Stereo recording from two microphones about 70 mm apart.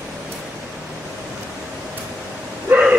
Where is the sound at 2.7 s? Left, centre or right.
Centre.